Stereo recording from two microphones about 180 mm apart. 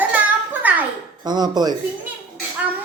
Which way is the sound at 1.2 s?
25° right (ahead or behind).